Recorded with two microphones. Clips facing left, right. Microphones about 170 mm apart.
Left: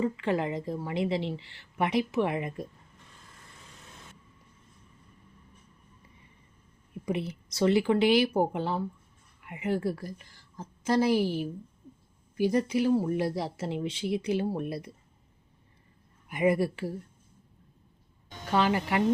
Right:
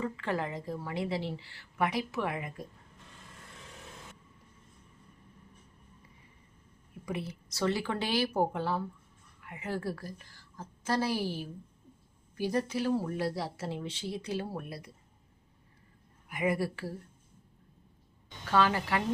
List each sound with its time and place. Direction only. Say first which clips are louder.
0.0 s a woman's voice: left 5 dB; 20° left (ahead or behind)
7.0 s a woman's voice: left 6 dB; 20° left (ahead or behind)
12.4 s a woman's voice: left 5 dB; 15° left (ahead or behind)
16.3 s a woman's voice: left 5 dB; 25° left (ahead or behind)
18.5 s a woman's voice: left 2 dB; 20° left (ahead or behind)